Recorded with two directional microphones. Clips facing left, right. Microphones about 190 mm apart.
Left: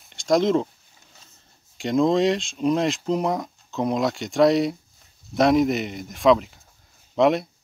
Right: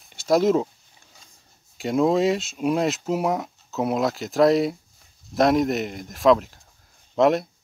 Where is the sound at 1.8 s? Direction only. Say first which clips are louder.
Even; 5° right (ahead or behind).